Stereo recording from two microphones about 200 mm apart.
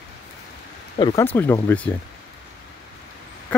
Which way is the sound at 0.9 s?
25° left (ahead or behind).